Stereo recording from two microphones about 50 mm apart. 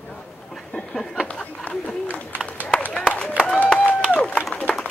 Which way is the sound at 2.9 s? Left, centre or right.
Left.